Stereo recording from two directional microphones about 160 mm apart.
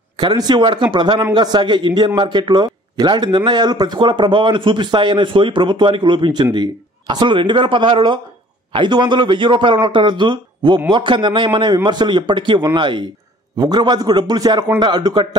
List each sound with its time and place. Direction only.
0.2 s a man's voice: 25° right (ahead or behind)